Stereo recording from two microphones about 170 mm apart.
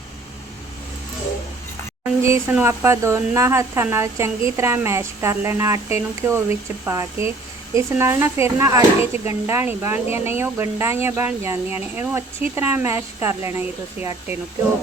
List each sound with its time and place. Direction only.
2.2 s speech: 15° right (ahead or behind)